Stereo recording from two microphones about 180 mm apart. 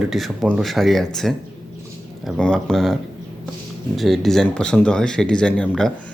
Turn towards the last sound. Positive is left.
turn(degrees=5)  # may be behind; listen again after turning